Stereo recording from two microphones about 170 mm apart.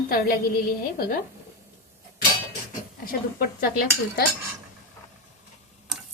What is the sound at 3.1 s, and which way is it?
Cutlery, 60° left (ahead or behind).